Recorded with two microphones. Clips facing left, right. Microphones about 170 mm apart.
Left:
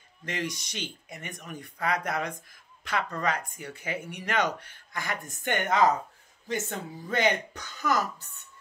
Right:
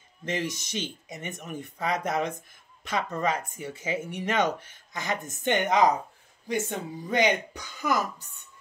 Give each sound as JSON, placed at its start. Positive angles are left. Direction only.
{"t": 0.2, "sound": "speech", "side_deg": -20}